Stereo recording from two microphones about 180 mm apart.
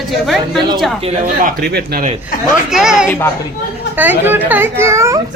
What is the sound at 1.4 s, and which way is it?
Speech, 55° right (ahead or behind).